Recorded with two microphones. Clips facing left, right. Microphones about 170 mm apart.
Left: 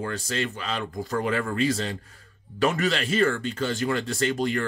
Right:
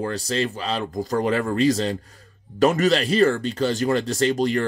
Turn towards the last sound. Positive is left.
turn(degrees=-35)  # may be behind; listen again after turning